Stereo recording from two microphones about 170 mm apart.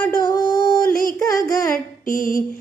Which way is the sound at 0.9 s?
55° left (ahead or behind).